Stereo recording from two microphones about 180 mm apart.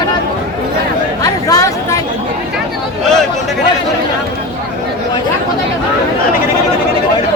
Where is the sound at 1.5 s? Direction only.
20° left (ahead or behind).